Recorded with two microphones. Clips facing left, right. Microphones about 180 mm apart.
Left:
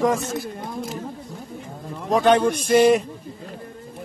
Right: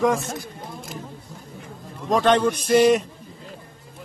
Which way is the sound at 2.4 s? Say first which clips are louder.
Left 1 dB; 50° left (ahead or behind).